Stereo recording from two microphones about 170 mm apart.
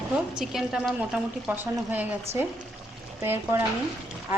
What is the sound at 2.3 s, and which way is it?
Speech, 40° right (ahead or behind).